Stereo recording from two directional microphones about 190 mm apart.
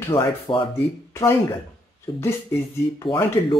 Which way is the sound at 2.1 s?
30° left (ahead or behind).